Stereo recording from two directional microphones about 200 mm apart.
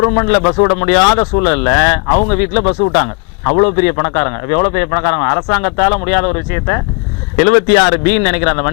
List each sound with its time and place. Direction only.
0.0 s speech: 20° left (ahead or behind)